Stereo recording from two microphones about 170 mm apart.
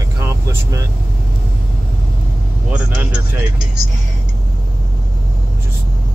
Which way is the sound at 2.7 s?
5° right (ahead or behind).